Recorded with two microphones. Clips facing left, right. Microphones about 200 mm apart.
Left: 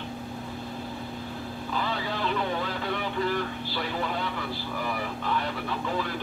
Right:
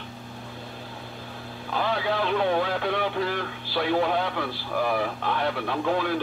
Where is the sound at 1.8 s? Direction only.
65° right (ahead or behind).